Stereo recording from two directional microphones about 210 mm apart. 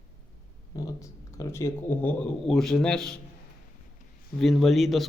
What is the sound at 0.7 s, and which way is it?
Speech, 15° left (ahead or behind).